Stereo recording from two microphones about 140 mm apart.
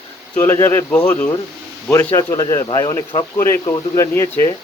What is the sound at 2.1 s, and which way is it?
Speech, 25° left (ahead or behind).